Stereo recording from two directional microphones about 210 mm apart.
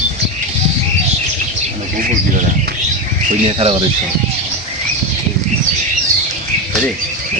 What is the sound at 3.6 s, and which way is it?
Speech, 30° right (ahead or behind).